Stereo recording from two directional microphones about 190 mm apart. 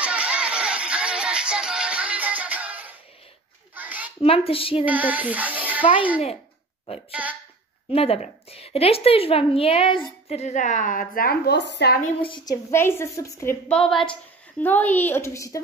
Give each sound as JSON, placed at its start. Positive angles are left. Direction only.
{"t": 0.0, "sound": "music", "side_deg": -5}
{"t": 3.7, "sound": "a sound", "side_deg": -10}
{"t": 4.2, "sound": "speech", "side_deg": 30}
{"t": 4.8, "sound": "speech", "side_deg": -10}
{"t": 7.1, "sound": "speech", "side_deg": -10}
{"t": 7.9, "sound": "a woman's voice", "side_deg": 30}
{"t": 12.3, "sound": "speech", "side_deg": 25}
{"t": 12.7, "sound": "a woman's voice", "side_deg": 15}